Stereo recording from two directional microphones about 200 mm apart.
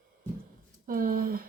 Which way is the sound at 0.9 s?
45° right (ahead or behind).